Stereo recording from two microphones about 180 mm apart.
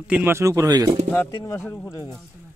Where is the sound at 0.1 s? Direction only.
10° right (ahead or behind).